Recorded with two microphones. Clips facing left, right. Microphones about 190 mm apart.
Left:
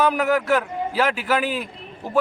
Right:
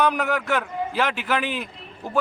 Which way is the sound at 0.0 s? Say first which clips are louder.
Left 3 dB; 5° left (ahead or behind).